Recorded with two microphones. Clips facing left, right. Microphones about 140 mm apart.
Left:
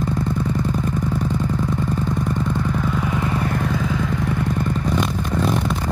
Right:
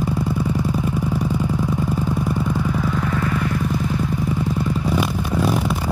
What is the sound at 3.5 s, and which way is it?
Vehicle, 85° left.